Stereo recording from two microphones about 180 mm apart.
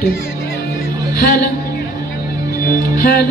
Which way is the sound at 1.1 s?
50° left (ahead or behind).